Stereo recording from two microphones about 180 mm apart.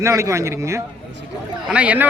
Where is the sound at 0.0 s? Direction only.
15° right (ahead or behind).